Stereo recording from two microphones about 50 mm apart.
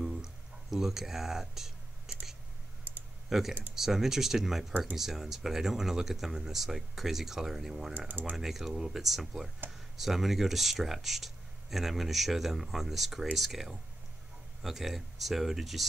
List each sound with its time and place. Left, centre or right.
0.0 s music: centre
2.1 s a sound: centre
3.3 s speech: centre
8.1 s speech: right
8.4 s speech: centre